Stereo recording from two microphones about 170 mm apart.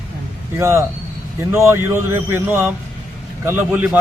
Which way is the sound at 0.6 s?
15° right (ahead or behind).